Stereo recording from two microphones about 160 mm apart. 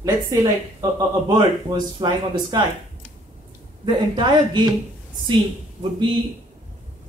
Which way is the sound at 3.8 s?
30° right (ahead or behind).